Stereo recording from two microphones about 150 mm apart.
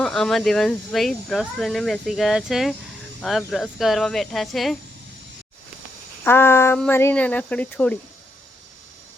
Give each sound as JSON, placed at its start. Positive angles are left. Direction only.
{"t": 0.0, "sound": "speech", "side_deg": 5}
{"t": 6.2, "sound": "speech", "side_deg": 15}